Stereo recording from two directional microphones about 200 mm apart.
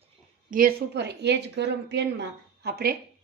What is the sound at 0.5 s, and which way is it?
A woman's voice, 50° right (ahead or behind).